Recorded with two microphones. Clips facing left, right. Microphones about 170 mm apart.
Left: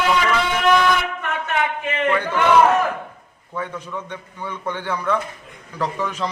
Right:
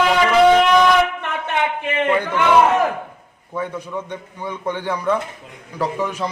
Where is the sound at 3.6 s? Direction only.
15° right (ahead or behind).